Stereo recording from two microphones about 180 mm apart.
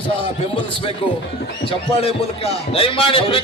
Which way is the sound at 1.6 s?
35° left (ahead or behind).